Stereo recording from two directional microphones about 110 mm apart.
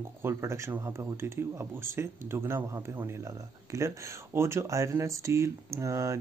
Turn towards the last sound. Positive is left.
turn(degrees=-30)  # may be behind; listen again after turning